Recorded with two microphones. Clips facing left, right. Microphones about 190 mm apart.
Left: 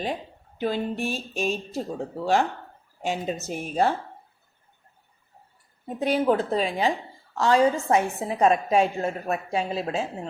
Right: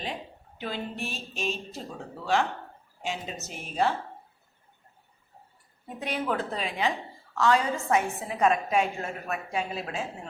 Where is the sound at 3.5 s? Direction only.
45° left (ahead or behind).